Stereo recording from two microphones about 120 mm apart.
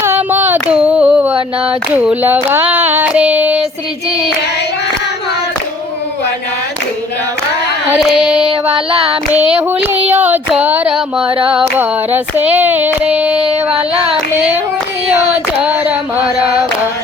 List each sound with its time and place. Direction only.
0.0 s carnatic music: 15° right (ahead or behind)
2.0 s child singing: 15° right (ahead or behind)
7.9 s child singing: 5° right (ahead or behind)
8.7 s child singing: 50° right (ahead or behind)
9.6 s child singing: 15° right (ahead or behind)
14.3 s hands: 15° right (ahead or behind)
15.5 s a sound: 10° right (ahead or behind)